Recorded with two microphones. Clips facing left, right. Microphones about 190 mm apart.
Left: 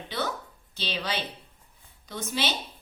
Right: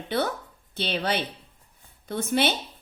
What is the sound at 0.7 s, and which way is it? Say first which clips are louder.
A woman's voice: right 5 dB; 55° right (ahead or behind).